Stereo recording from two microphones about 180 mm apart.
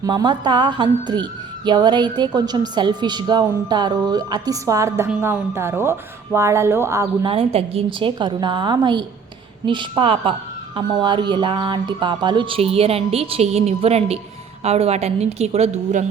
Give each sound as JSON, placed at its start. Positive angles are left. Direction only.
{"t": 0.0, "sound": "a woman's voice", "side_deg": -25}
{"t": 7.3, "sound": "a woman's voice", "side_deg": -30}